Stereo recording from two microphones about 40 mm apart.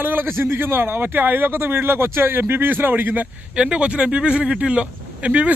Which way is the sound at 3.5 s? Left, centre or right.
Right.